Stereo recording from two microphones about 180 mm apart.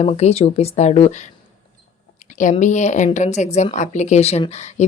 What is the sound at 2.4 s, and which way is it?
A woman's voice, 45° left (ahead or behind).